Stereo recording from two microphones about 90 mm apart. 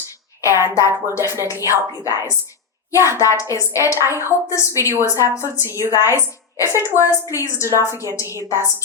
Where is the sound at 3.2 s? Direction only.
35° left (ahead or behind).